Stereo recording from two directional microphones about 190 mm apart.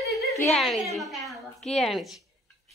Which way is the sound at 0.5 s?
Centre (ahead or behind).